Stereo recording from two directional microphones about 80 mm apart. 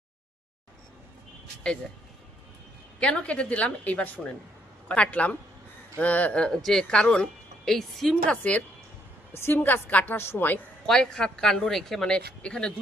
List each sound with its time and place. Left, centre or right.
3.0 s a woman's voice: centre
8.3 s speech: centre
9.3 s a woman's voice: left
10.8 s speech: centre